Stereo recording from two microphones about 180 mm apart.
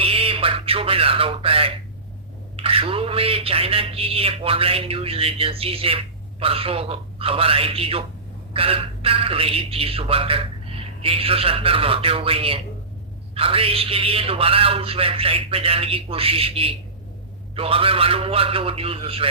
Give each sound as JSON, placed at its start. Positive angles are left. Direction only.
{"t": 0.0, "sound": "speech", "side_deg": -30}